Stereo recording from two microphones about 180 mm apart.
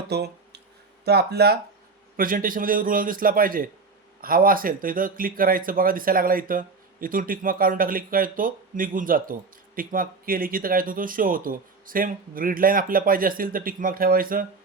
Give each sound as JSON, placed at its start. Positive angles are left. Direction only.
{"t": 0.1, "sound": "a sound", "side_deg": -65}
{"t": 1.0, "sound": "speech", "side_deg": -65}
{"t": 2.1, "sound": "speech", "side_deg": -50}